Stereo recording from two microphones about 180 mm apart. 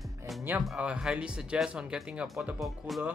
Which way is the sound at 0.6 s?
5° right (ahead or behind).